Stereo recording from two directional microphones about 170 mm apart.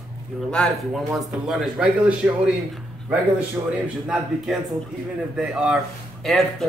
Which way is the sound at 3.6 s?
15° right (ahead or behind).